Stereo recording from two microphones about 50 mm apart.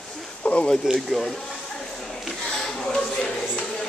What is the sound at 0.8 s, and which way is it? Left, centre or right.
Speech, centre.